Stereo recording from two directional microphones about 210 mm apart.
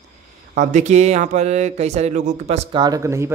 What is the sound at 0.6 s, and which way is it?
Speech, 35° right (ahead or behind).